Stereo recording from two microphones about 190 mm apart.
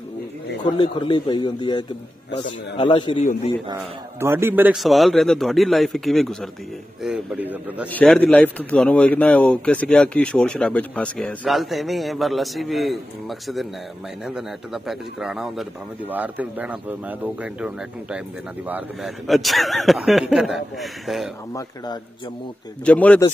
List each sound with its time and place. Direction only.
0.7 s a man's voice: 25° left (ahead or behind)
4.2 s a man's voice: 10° right (ahead or behind)
7.9 s a man's voice: 5° left (ahead or behind)
22.8 s speech: 5° left (ahead or behind)